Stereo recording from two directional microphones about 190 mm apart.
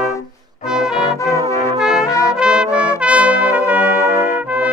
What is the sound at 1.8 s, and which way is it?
Trumpet, 5° right (ahead or behind).